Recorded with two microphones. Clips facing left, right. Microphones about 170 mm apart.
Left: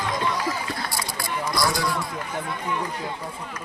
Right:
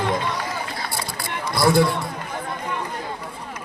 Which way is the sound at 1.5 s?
55° right (ahead or behind).